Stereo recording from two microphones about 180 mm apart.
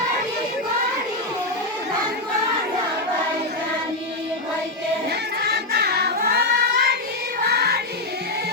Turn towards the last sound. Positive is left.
turn(degrees=-65)  # may be behind; listen again after turning